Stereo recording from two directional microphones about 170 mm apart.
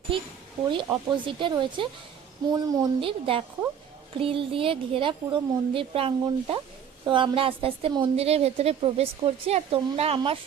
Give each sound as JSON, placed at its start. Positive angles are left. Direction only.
{"t": 0.7, "sound": "a woman's voice", "side_deg": -30}